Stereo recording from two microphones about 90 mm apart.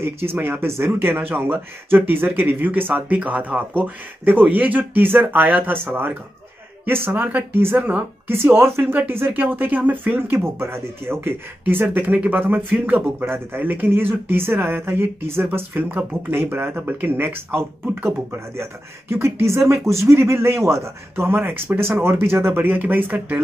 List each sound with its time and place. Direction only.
0.3 s speech: 25° right (ahead or behind)